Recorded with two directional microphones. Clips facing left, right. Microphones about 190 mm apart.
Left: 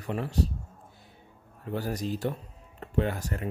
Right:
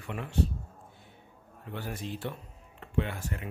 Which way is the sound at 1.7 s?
40° left (ahead or behind).